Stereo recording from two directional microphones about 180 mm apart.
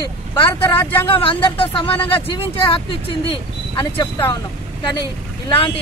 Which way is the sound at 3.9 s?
15° left (ahead or behind).